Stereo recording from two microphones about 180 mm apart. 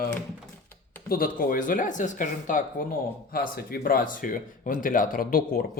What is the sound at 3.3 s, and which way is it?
Speech, 55° left (ahead or behind).